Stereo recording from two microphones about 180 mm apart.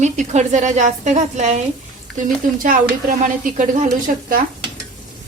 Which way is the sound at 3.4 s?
45° right (ahead or behind).